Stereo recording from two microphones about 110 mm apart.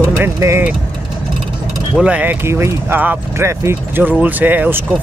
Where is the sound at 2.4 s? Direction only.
25° right (ahead or behind).